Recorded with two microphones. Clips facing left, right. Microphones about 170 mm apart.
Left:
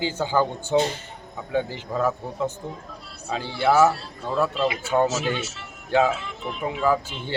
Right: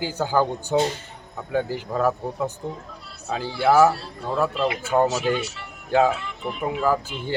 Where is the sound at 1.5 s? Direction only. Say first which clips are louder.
Right 1 dB; 5° right (ahead or behind).